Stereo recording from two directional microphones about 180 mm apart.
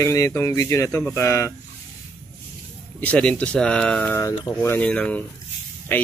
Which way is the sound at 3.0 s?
5° left (ahead or behind).